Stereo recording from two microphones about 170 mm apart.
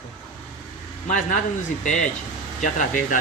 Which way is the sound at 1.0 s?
50° left (ahead or behind).